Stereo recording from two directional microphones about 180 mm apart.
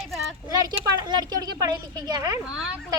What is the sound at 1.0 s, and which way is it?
A woman's voice, 20° right (ahead or behind).